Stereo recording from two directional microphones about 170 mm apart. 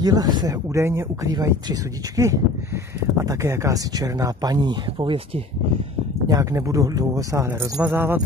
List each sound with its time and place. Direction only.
0.0 s speech: 25° right (ahead or behind)
6.2 s speech: 20° right (ahead or behind)